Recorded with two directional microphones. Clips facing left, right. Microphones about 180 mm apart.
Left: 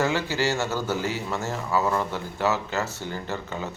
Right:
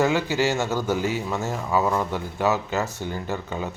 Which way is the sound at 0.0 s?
15° right (ahead or behind).